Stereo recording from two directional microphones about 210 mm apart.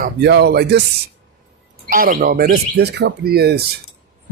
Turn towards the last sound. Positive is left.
turn(degrees=-50)  # may be behind; listen again after turning